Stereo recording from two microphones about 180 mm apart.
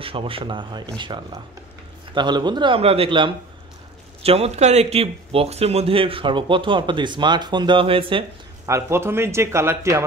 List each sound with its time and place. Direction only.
0.0 s speech: 30° right (ahead or behind)
8.6 s speech: 15° right (ahead or behind)